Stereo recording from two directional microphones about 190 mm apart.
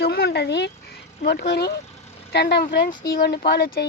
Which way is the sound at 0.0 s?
55° left (ahead or behind).